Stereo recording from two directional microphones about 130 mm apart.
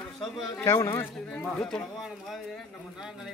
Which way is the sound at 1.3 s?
5° left (ahead or behind).